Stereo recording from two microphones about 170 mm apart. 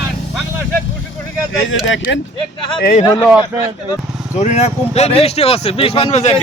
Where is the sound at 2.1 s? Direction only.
90° left.